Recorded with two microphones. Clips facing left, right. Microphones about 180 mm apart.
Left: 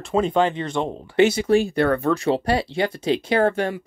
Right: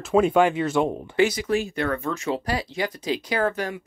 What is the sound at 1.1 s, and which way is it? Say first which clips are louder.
Speech: left 7 dB; 25° left (ahead or behind).